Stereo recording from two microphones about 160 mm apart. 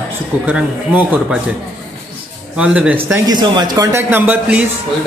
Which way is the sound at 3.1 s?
25° right (ahead or behind).